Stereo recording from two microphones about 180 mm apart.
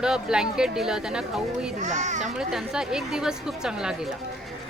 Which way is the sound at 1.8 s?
40° right (ahead or behind).